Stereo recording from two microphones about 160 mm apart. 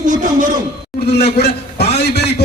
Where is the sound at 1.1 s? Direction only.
90° left.